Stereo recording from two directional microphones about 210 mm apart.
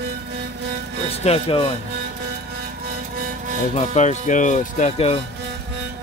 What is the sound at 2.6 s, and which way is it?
Music, 45° right (ahead or behind).